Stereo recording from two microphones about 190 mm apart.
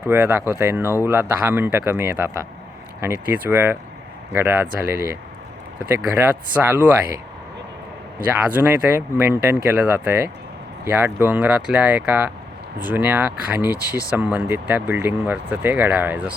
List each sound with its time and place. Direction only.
0.1 s speech: 10° right (ahead or behind)
8.5 s speech: 10° right (ahead or behind)
13.7 s speech: 20° left (ahead or behind)
14.2 s speech: 10° right (ahead or behind)